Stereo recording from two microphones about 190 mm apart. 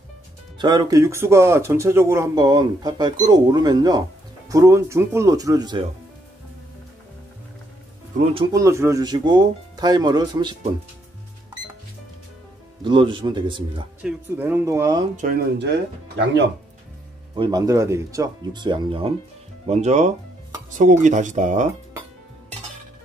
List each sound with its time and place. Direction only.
0.6 s speech: 20° right (ahead or behind)
8.5 s speech: 15° right (ahead or behind)
12.8 s speech: 25° right (ahead or behind)
14.0 s speech: 10° right (ahead or behind)
15.6 s speech: 65° right (ahead or behind)
17.4 s speech: 20° right (ahead or behind); by 21.6 s 40° right (ahead or behind)